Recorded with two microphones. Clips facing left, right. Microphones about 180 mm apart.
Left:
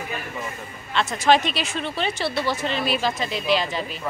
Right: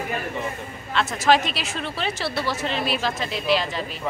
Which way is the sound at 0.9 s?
Centre (ahead or behind).